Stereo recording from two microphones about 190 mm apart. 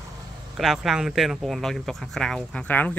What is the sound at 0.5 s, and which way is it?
Speech, centre (ahead or behind).